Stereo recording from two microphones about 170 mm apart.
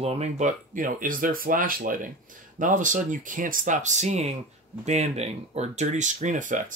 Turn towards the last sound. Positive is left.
turn(degrees=-45)  # may be behind; listen again after turning